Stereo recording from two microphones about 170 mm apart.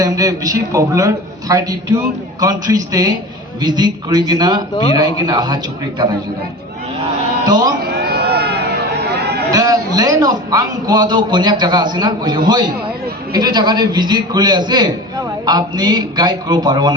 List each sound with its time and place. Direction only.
0.0 s a man's voice: 20° right (ahead or behind)
7.4 s music: 20° right (ahead or behind)
7.8 s a sound: 70° right (ahead or behind)
9.5 s a man's voice: 20° right (ahead or behind)